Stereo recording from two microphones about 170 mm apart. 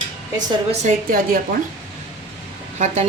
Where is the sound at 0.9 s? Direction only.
55° right (ahead or behind).